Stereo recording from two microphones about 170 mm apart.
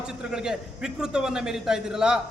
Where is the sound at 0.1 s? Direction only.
5° right (ahead or behind).